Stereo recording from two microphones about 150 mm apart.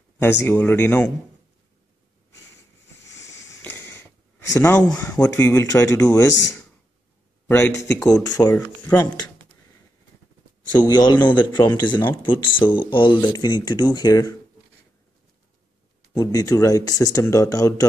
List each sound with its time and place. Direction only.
0.2 s speech: 15° left (ahead or behind)
3.2 s a sound: 20° left (ahead or behind)
4.9 s speech: 15° left (ahead or behind)
7.4 s speech: 15° left (ahead or behind)
10.7 s speech: 30° left (ahead or behind)
16.2 s speech: 20° left (ahead or behind)